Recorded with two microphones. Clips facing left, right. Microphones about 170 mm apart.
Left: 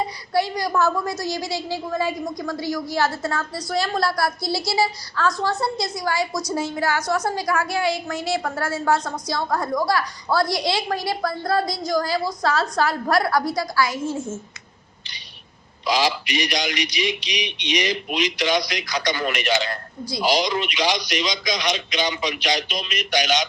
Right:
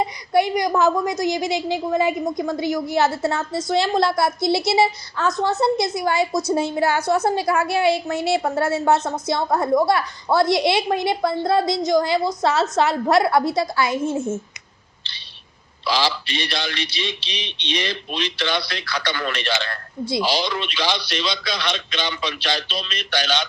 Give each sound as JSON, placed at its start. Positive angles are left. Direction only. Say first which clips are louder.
{"t": 0.0, "sound": "a woman's voice", "louder": "right 3 dB", "side_deg": -20}
{"t": 15.9, "sound": "speech", "louder": "left 1 dB", "side_deg": 15}